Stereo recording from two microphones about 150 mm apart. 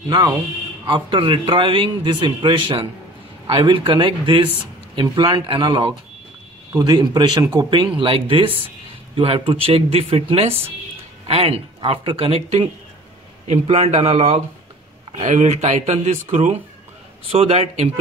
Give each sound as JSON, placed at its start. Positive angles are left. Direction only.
{"t": 0.8, "sound": "speech", "side_deg": -30}